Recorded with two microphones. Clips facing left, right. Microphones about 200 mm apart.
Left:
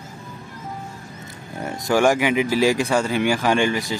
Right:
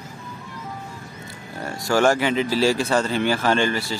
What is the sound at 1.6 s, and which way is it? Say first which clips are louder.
Speech: left 1 dB; 15° left (ahead or behind).